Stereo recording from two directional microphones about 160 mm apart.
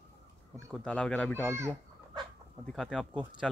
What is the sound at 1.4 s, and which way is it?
Speech, 15° right (ahead or behind).